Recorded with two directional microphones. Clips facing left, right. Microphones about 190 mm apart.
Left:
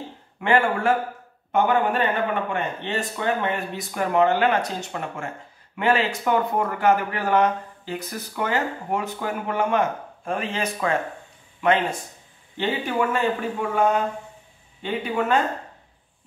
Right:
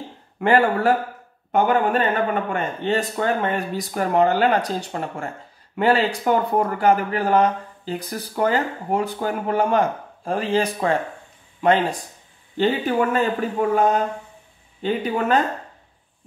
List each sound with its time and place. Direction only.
0.4 s speech: 40° right (ahead or behind)